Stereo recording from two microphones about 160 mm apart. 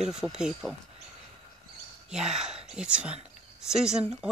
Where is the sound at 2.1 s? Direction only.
5° right (ahead or behind).